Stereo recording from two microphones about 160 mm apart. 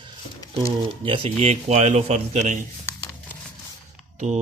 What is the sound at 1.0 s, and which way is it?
Speech, 35° right (ahead or behind).